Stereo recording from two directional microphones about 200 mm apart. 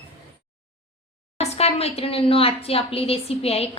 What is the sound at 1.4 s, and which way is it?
A woman's voice, 30° left (ahead or behind).